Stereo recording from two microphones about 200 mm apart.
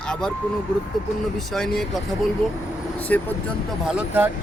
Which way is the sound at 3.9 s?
10° right (ahead or behind).